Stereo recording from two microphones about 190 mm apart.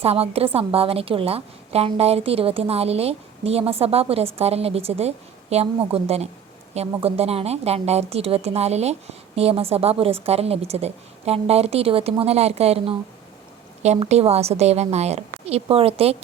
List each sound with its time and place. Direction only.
0.0 s a woman's voice: 30° right (ahead or behind)